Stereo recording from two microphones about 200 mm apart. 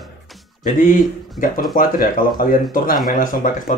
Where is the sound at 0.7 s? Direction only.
40° left (ahead or behind).